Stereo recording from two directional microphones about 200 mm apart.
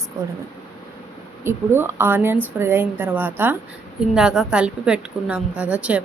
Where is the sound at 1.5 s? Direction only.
10° right (ahead or behind).